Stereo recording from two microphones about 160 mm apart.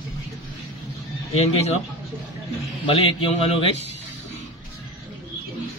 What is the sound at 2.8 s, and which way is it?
Speech, 35° left (ahead or behind).